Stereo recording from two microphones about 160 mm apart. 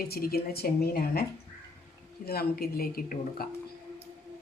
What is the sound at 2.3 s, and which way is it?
Speech, 70° left (ahead or behind).